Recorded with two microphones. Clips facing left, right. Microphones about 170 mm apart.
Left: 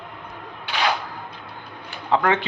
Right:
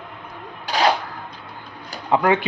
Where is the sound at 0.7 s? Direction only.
40° right (ahead or behind).